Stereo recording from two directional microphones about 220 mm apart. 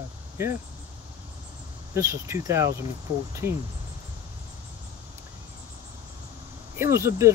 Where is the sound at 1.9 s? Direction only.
15° right (ahead or behind).